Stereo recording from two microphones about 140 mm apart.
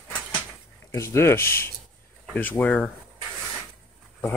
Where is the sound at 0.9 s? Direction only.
20° left (ahead or behind).